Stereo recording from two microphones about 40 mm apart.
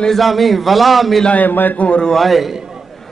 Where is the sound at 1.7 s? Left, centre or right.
Left.